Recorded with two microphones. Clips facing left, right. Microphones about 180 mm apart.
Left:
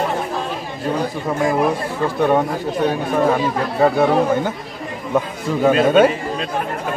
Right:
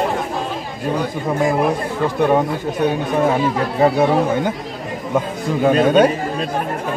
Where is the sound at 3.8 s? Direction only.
20° right (ahead or behind).